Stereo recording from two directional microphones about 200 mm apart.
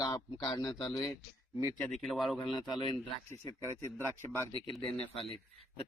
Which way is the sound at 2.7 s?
25° left (ahead or behind).